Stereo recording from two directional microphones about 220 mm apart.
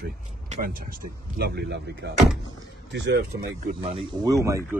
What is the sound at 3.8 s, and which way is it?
Speech, 25° right (ahead or behind).